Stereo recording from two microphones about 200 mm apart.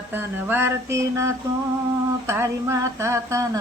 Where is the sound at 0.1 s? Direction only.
10° right (ahead or behind).